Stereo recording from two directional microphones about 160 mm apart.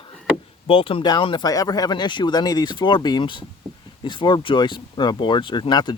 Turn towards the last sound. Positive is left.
turn(degrees=25)  # may be behind; listen again after turning